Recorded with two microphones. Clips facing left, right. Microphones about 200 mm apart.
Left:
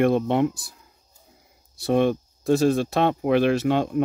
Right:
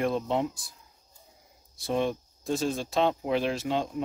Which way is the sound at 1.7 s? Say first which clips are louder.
Left 8 dB; 70° left (ahead or behind).